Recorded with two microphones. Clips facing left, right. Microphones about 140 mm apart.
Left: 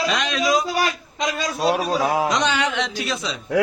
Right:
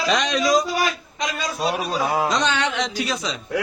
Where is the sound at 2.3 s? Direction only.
10° left (ahead or behind).